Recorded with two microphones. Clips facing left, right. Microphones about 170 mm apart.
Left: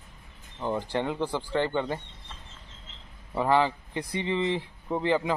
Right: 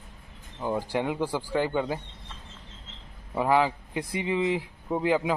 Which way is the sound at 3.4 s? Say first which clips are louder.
Even; 5° right (ahead or behind).